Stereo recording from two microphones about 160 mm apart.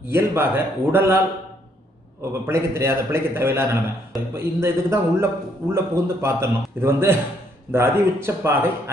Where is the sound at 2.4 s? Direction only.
15° right (ahead or behind).